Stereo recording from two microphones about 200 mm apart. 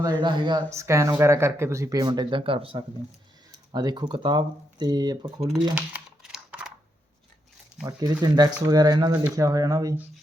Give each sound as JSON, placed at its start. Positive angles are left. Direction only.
{"t": 0.0, "sound": "speech", "side_deg": -20}
{"t": 5.7, "sound": "computer keyboard", "side_deg": -5}
{"t": 7.9, "sound": "speech", "side_deg": -20}